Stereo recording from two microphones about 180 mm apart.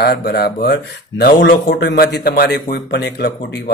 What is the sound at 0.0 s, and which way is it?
Speech, 65° left (ahead or behind).